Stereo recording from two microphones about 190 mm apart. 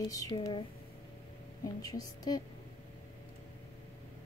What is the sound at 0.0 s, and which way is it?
Speech, 20° left (ahead or behind).